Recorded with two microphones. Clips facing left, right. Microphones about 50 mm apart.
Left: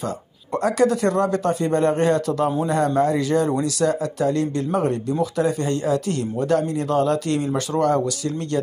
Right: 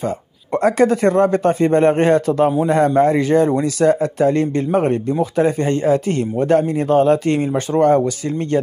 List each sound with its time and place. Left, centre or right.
0.6 s a man's voice: right